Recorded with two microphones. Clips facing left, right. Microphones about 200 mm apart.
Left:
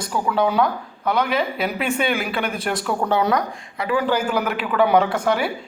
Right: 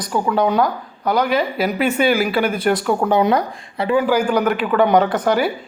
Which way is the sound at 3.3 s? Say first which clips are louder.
Right 3 dB; 30° right (ahead or behind).